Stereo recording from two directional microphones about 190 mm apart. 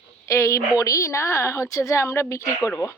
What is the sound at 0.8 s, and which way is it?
A woman's voice, 15° left (ahead or behind).